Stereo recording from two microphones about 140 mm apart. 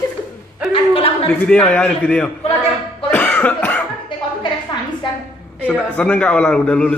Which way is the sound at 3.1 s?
10° left (ahead or behind).